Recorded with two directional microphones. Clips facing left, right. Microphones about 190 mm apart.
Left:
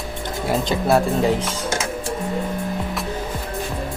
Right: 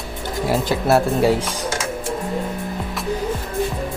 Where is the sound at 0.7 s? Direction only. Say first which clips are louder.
Even; 5° right (ahead or behind).